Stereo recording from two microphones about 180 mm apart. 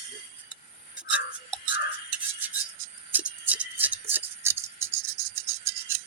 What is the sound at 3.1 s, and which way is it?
Music, 10° right (ahead or behind).